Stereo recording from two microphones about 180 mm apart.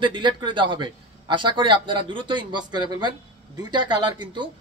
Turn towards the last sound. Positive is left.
turn(degrees=-25)  # may be behind; listen again after turning